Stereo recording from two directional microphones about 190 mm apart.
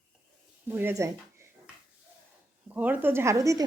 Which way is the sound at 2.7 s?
10° right (ahead or behind).